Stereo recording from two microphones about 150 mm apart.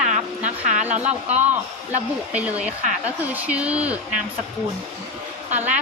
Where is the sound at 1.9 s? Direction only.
10° right (ahead or behind).